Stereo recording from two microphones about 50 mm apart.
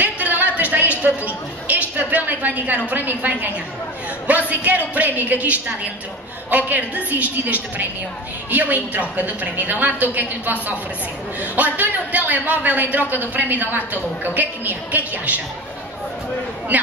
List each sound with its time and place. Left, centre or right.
0.0 s a sound: right
2.9 s a man's voice: right
16.7 s a man's voice: right